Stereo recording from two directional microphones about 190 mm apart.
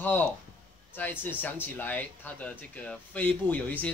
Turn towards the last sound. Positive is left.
turn(degrees=10)  # may be behind; listen again after turning